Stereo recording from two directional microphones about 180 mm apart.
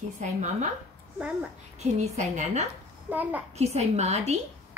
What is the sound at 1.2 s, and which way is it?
Speech, 5° right (ahead or behind).